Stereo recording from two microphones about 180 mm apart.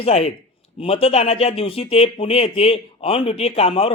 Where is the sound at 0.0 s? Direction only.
35° left (ahead or behind).